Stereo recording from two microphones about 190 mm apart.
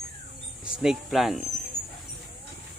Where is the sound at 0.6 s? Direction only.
5° right (ahead or behind).